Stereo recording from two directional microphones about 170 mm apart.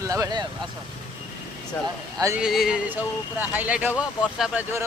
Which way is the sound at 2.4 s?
5° right (ahead or behind).